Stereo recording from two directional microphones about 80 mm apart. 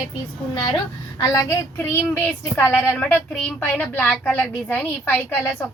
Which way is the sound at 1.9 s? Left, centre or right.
Left.